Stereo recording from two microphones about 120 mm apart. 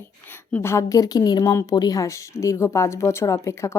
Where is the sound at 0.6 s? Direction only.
25° left (ahead or behind).